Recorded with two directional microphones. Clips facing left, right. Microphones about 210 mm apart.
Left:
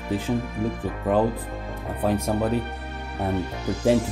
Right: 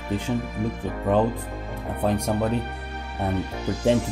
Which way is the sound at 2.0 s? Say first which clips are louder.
Even; 5° left (ahead or behind).